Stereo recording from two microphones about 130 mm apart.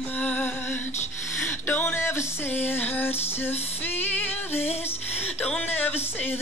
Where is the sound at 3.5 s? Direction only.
55° left (ahead or behind).